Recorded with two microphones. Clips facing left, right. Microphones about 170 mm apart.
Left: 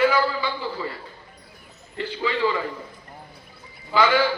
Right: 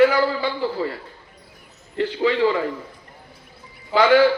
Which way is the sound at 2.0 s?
60° right (ahead or behind).